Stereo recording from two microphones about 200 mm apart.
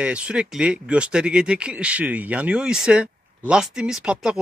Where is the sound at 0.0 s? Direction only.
5° right (ahead or behind).